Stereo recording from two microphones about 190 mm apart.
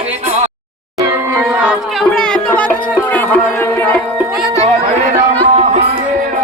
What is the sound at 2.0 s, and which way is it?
Music, 5° left (ahead or behind).